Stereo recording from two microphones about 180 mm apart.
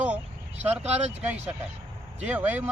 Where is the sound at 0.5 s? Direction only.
35° right (ahead or behind).